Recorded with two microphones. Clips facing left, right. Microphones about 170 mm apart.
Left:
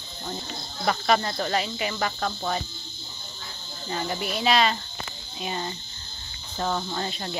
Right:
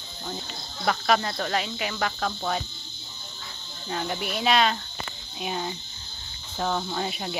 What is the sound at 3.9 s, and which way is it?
Speech, centre (ahead or behind).